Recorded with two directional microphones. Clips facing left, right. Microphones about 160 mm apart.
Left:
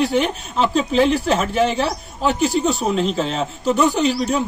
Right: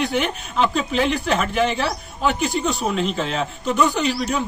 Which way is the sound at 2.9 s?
35° left (ahead or behind).